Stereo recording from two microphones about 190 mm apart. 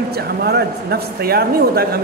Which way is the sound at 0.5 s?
55° right (ahead or behind).